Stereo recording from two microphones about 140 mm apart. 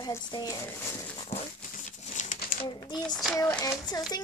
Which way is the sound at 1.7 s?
60° left (ahead or behind).